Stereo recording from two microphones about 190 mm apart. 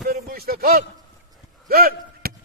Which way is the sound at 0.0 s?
50° right (ahead or behind).